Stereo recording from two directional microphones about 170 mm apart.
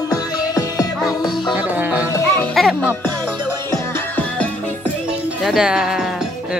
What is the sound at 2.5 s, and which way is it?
Music, centre (ahead or behind).